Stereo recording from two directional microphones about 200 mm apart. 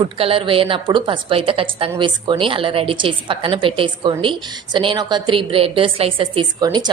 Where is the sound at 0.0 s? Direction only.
25° right (ahead or behind).